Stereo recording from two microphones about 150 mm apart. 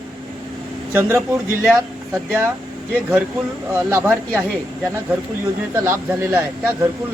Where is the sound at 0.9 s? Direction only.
15° right (ahead or behind).